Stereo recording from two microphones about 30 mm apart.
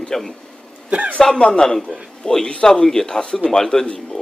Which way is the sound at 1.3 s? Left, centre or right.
Left.